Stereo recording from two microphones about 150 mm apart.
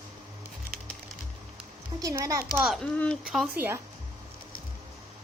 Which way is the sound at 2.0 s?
20° right (ahead or behind).